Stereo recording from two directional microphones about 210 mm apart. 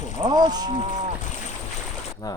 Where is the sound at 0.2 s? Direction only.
20° right (ahead or behind).